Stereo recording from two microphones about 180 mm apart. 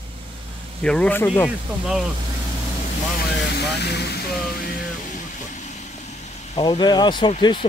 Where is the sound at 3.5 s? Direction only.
65° left (ahead or behind).